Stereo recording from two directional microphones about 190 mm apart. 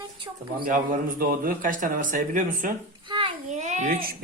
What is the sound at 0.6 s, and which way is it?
A man's voice, 45° right (ahead or behind).